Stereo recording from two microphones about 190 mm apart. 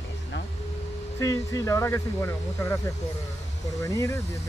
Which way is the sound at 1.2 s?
15° left (ahead or behind).